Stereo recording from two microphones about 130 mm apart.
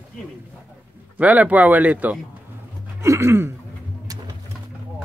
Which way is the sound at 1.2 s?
10° right (ahead or behind).